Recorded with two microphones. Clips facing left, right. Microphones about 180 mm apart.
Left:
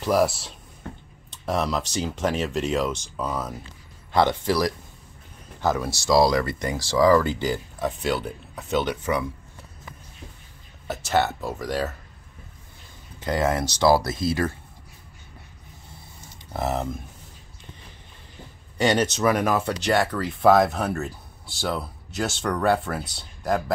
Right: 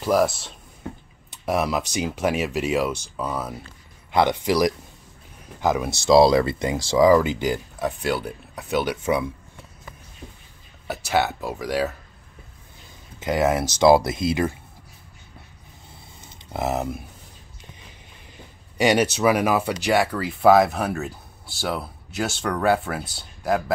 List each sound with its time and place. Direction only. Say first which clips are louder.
0.0 s speech: right 1 dB; centre (ahead or behind)
1.3 s speech: right 2 dB; 10° right (ahead or behind)
11.1 s speech: even; centre (ahead or behind)
13.2 s speech: right 2 dB; 15° right (ahead or behind)
13.8 s speech: right 4 dB; 20° right (ahead or behind)
16.6 s speech: right 1 dB; 10° right (ahead or behind)
18.8 s speech: right 2 dB; 10° right (ahead or behind)